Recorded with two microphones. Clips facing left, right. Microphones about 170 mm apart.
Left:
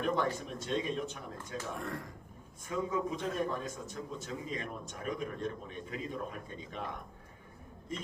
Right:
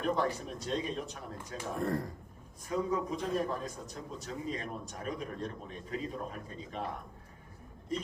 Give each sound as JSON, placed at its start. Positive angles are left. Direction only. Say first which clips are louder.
{"t": 0.0, "sound": "a man's voice", "louder": "right 1 dB", "side_deg": -35}